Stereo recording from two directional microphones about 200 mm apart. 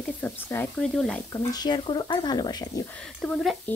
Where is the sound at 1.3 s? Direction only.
20° left (ahead or behind).